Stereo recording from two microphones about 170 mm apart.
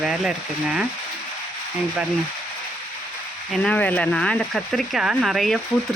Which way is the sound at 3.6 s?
10° left (ahead or behind).